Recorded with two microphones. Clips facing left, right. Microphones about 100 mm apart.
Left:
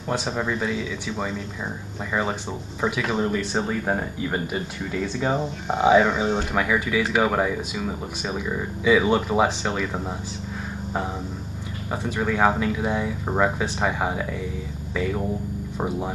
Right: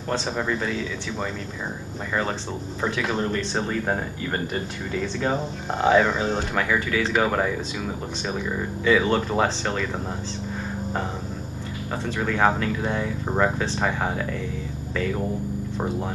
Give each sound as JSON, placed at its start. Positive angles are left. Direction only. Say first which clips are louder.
{"t": 0.1, "sound": "speech", "louder": "even", "side_deg": 10}
{"t": 2.8, "sound": "speech", "louder": "left 2 dB", "side_deg": 5}
{"t": 8.8, "sound": "speech", "louder": "left 1 dB", "side_deg": 10}
{"t": 12.2, "sound": "speech", "louder": "left 1 dB", "side_deg": 10}